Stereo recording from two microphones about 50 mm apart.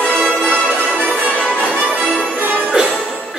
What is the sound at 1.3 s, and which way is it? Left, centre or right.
Music, centre.